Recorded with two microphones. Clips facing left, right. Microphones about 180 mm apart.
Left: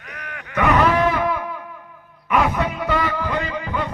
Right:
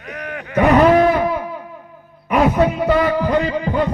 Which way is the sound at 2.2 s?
35° right (ahead or behind).